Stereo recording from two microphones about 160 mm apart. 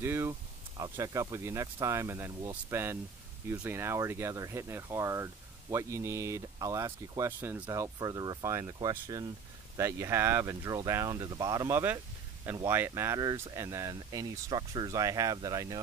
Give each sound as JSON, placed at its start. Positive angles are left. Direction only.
{"t": 0.0, "sound": "speech", "side_deg": -15}
{"t": 9.8, "sound": "speech", "side_deg": -15}